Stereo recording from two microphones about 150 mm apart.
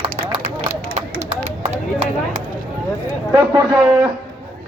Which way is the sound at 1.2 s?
35° right (ahead or behind).